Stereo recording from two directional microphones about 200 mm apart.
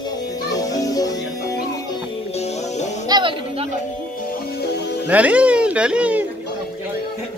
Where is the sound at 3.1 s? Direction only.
25° right (ahead or behind).